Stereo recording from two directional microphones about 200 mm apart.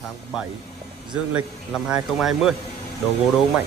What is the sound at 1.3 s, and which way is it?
Speech, 5° right (ahead or behind).